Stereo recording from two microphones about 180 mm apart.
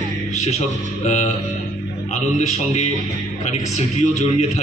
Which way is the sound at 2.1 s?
40° left (ahead or behind).